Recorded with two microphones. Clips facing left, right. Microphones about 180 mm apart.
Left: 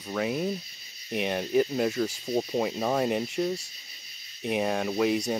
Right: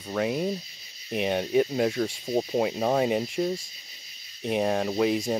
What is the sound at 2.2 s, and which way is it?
Speech, 10° right (ahead or behind).